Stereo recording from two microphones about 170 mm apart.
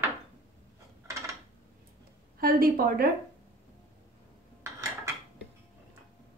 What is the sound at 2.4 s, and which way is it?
Speech, 60° right (ahead or behind).